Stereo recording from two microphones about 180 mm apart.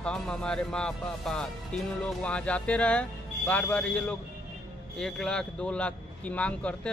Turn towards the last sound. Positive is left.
turn(degrees=5)  # may be behind; listen again after turning